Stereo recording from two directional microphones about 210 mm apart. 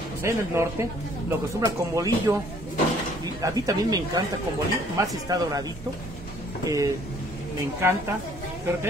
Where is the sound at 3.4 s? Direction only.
15° right (ahead or behind).